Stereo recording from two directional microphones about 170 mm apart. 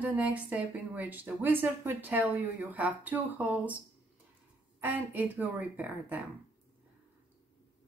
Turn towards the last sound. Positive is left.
turn(degrees=-10)  # may be behind; listen again after turning